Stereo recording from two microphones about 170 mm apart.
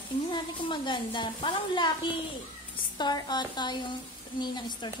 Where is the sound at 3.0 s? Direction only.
25° left (ahead or behind).